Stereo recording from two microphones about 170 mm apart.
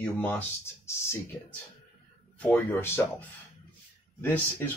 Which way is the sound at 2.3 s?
10° left (ahead or behind).